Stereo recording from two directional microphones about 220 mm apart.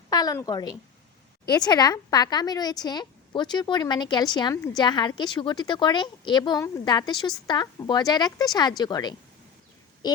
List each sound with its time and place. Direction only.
0.1 s a woman's voice: 15° left (ahead or behind)